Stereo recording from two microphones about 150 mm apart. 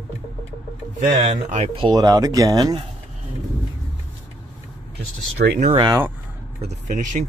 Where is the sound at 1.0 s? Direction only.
50° right (ahead or behind).